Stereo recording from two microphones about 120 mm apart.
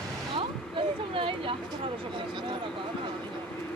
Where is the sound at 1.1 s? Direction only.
45° right (ahead or behind).